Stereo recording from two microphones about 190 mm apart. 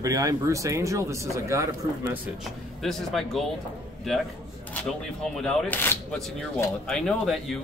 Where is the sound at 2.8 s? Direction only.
Centre (ahead or behind).